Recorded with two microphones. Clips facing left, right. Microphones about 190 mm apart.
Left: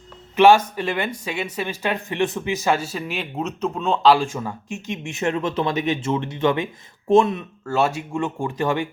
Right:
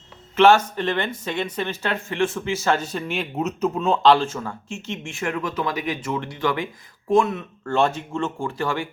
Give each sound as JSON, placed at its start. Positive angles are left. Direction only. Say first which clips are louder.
{"t": 0.3, "sound": "speech", "louder": "left 1 dB", "side_deg": 10}
{"t": 7.6, "sound": "speech", "louder": "even", "side_deg": 5}